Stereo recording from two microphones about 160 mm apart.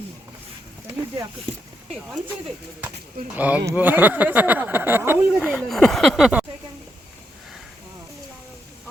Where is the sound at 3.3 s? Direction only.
10° right (ahead or behind).